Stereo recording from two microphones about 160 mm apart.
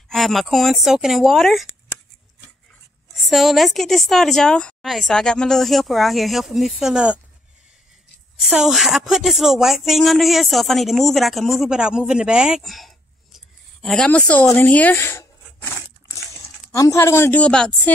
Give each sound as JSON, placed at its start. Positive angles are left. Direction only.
{"t": 0.1, "sound": "a woman's voice", "side_deg": 0}
{"t": 3.2, "sound": "a woman's voice", "side_deg": 0}
{"t": 8.4, "sound": "speech", "side_deg": 0}